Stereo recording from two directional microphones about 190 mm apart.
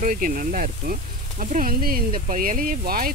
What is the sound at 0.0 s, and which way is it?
Speech, 45° right (ahead or behind).